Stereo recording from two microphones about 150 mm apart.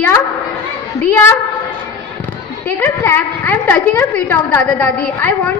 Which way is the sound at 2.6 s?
15° left (ahead or behind).